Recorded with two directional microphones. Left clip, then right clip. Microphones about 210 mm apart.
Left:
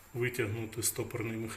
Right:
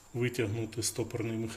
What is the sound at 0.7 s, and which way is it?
Speech, 45° right (ahead or behind).